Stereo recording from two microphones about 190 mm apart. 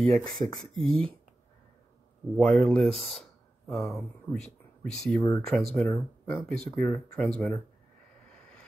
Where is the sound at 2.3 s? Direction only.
10° left (ahead or behind).